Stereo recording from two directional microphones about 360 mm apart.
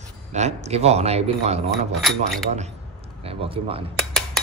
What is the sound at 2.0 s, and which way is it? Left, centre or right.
Speech, centre.